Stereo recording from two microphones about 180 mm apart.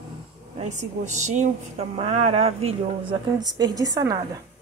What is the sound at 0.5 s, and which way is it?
A woman's voice, 40° right (ahead or behind).